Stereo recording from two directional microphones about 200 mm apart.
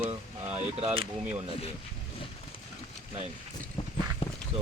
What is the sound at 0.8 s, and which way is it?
Speech, 30° right (ahead or behind).